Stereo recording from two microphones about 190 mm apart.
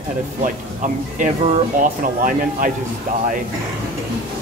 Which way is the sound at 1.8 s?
45° right (ahead or behind).